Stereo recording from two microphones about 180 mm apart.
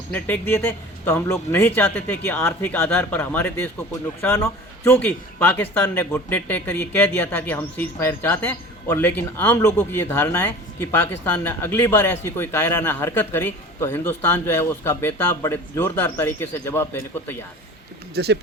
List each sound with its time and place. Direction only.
0.1 s a man's voice: 10° left (ahead or behind)
18.1 s speech: 65° right (ahead or behind)